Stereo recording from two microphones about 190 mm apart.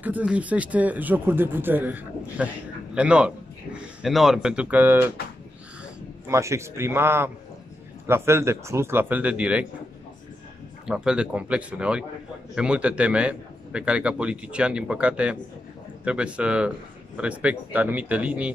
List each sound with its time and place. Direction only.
0.0 s speech: 10° right (ahead or behind)
6.2 s speech: 15° right (ahead or behind)
10.9 s a man's voice: 5° right (ahead or behind)